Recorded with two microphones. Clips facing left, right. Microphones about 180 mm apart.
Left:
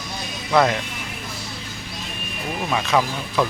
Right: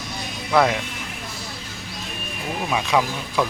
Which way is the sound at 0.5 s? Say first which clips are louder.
Left 1 dB; 5° right (ahead or behind).